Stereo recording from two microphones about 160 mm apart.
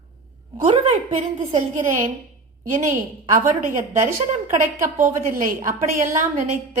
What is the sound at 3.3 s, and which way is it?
Speech, 55° right (ahead or behind).